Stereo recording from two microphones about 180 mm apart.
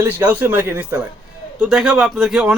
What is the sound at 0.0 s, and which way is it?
A man's voice, 10° right (ahead or behind).